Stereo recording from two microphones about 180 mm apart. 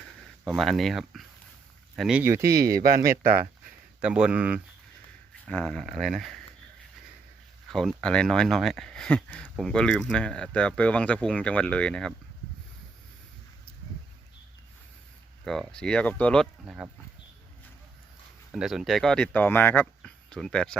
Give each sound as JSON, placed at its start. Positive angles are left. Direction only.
{"t": 0.4, "sound": "speech", "side_deg": 0}
{"t": 3.1, "sound": "speech", "side_deg": -55}
{"t": 4.0, "sound": "speech", "side_deg": -5}
{"t": 5.5, "sound": "speech", "side_deg": 5}
{"t": 7.7, "sound": "speech", "side_deg": 0}
{"t": 15.4, "sound": "speech", "side_deg": 5}
{"t": 18.5, "sound": "speech", "side_deg": -5}